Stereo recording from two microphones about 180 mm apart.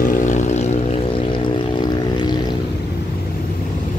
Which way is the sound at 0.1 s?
45° left (ahead or behind).